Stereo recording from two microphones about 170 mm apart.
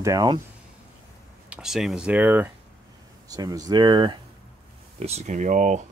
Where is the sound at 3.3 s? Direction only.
20° right (ahead or behind).